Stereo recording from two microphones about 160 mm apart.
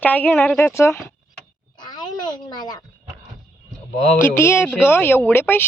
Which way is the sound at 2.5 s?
25° left (ahead or behind).